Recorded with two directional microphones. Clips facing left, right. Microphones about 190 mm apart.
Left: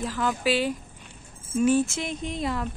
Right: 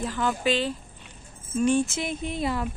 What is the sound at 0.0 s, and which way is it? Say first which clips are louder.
Speech: even; centre (ahead or behind).